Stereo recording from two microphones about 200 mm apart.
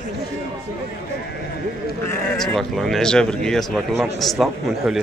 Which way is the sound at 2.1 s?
Centre (ahead or behind).